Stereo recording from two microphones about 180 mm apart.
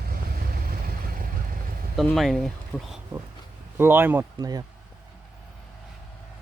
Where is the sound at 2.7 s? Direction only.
15° left (ahead or behind).